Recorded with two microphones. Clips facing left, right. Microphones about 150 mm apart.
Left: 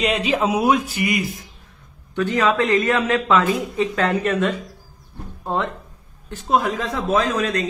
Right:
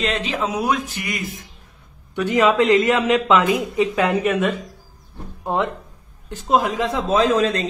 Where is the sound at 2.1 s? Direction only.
15° right (ahead or behind).